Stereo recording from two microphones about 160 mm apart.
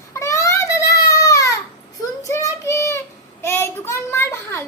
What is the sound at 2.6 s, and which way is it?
Child singing, 20° left (ahead or behind).